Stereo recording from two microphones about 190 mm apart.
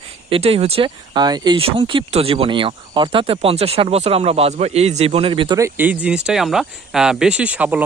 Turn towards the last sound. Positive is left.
turn(degrees=-10)  # may be behind; listen again after turning